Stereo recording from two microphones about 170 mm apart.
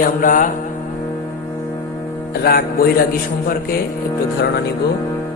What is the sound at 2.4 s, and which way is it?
Music, 65° left (ahead or behind).